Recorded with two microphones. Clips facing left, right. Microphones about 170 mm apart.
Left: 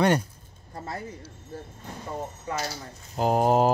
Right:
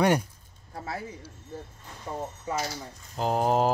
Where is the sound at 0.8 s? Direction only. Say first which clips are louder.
Even; 5° right (ahead or behind).